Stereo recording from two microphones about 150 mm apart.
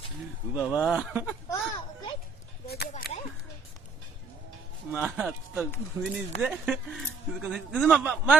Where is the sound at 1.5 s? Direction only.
30° left (ahead or behind).